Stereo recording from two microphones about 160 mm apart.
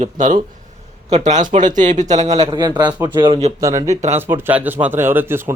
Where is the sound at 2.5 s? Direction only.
25° right (ahead or behind).